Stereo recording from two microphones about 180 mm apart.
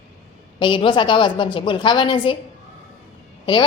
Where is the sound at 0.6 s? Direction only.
25° left (ahead or behind).